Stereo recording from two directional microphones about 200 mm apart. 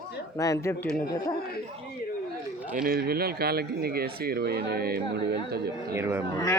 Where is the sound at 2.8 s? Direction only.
45° right (ahead or behind).